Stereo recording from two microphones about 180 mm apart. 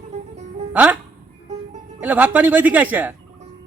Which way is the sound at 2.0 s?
10° right (ahead or behind).